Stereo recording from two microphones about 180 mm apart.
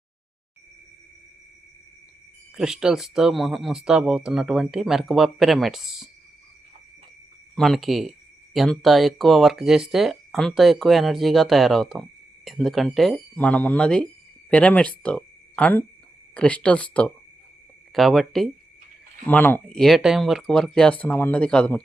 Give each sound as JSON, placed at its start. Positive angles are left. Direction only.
{"t": 2.6, "sound": "speech", "side_deg": -5}
{"t": 7.5, "sound": "speech", "side_deg": 0}